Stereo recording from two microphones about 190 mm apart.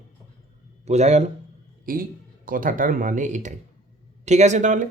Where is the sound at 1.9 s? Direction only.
45° right (ahead or behind).